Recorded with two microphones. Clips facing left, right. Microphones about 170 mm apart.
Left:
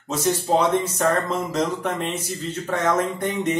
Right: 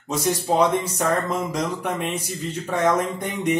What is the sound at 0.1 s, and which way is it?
Speech, 10° right (ahead or behind).